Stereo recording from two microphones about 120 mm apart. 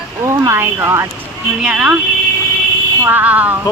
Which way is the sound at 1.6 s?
10° right (ahead or behind).